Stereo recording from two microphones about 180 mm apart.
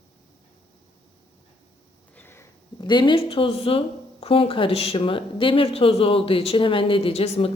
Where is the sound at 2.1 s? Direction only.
10° left (ahead or behind).